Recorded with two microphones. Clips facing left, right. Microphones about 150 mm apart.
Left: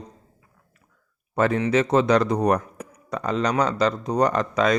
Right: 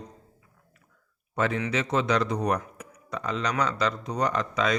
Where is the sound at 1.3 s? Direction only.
45° left (ahead or behind).